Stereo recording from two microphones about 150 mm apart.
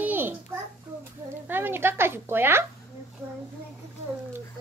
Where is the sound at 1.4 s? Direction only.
15° right (ahead or behind).